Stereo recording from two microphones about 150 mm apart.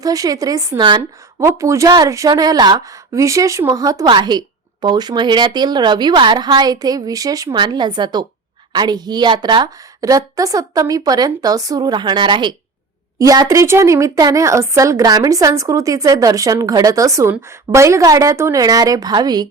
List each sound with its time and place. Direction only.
0.0 s a woman's voice: 25° right (ahead or behind)
1.4 s a woman's voice: 20° right (ahead or behind)